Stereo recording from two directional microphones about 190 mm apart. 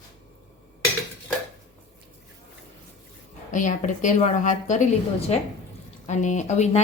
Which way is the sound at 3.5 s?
40° left (ahead or behind).